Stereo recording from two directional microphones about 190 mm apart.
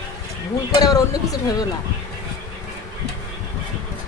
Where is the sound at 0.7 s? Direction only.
20° left (ahead or behind).